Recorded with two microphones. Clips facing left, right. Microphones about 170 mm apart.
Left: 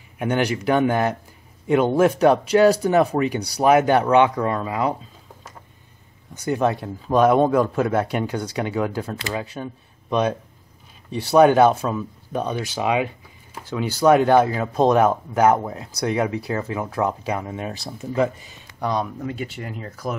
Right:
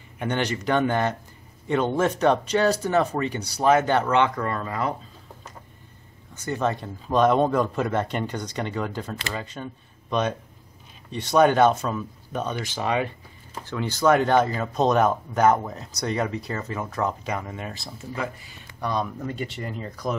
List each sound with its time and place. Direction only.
0.2 s speech: 10° left (ahead or behind)
6.3 s speech: 10° left (ahead or behind)
18.1 s speech: 25° left (ahead or behind)
18.9 s speech: 10° left (ahead or behind)